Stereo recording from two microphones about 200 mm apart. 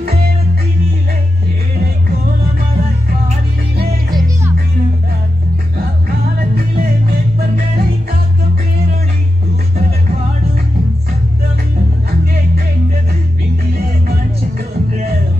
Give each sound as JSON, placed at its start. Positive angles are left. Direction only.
{"t": 6.5, "sound": "music", "side_deg": -50}
{"t": 13.7, "sound": "music", "side_deg": -50}